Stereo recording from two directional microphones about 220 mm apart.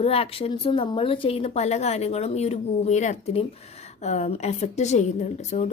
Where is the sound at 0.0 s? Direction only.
25° left (ahead or behind).